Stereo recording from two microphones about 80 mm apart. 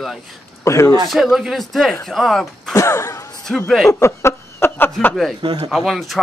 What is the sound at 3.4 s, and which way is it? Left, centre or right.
Speech, centre.